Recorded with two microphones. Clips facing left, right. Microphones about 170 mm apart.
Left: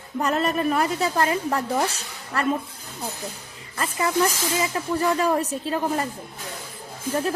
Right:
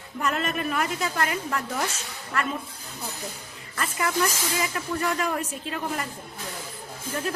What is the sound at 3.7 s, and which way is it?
A woman's voice, 30° left (ahead or behind).